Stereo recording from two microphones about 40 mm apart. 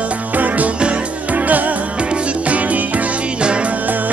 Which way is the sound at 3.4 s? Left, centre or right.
Right.